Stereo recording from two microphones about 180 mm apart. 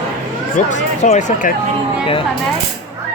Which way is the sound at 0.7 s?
40° left (ahead or behind).